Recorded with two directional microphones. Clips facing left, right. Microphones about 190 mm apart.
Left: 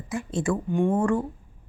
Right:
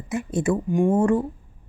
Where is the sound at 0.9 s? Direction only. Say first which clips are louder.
Right 5 dB; 20° right (ahead or behind).